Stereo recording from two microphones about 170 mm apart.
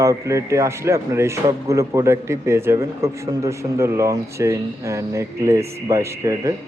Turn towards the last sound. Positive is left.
turn(degrees=-20)  # may be behind; listen again after turning